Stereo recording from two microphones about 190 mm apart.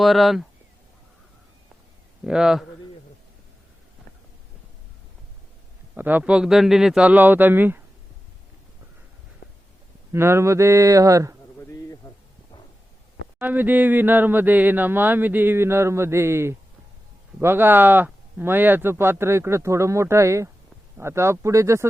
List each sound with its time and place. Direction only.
0.0 s speech: centre (ahead or behind)
2.2 s speech: 5° right (ahead or behind)
5.9 s speech: 10° right (ahead or behind)
9.4 s a sound: 60° left (ahead or behind)
10.1 s speech: 15° right (ahead or behind)
11.6 s a sound: 15° left (ahead or behind)
13.4 s speech: 10° right (ahead or behind)